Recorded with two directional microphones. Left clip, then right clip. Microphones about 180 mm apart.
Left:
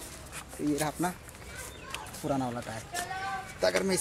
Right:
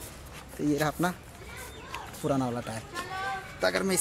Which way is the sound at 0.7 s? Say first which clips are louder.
Right 4 dB; 25° right (ahead or behind).